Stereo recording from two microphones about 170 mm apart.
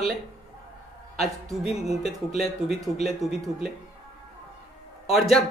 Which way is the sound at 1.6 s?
40° left (ahead or behind).